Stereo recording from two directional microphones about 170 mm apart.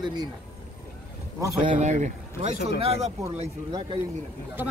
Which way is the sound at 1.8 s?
45° right (ahead or behind).